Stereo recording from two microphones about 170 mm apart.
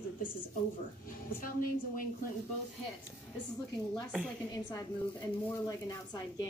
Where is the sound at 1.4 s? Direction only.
55° left (ahead or behind).